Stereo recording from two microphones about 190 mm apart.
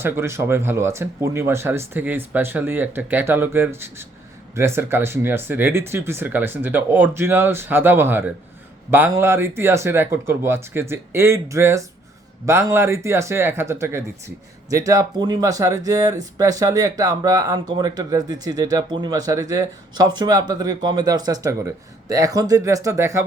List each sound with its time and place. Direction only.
0.0 s speech: 15° right (ahead or behind)